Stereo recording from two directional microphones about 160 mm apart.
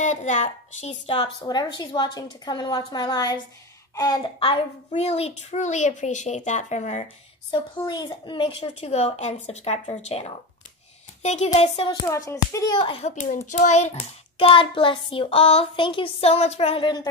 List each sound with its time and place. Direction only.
0.0 s a woman's voice: 50° left (ahead or behind)
1.4 s a woman's voice: 25° left (ahead or behind); by 7.1 s 50° left (ahead or behind)
7.5 s a child's voice: 30° left (ahead or behind)
11.9 s a child's voice: 20° left (ahead or behind)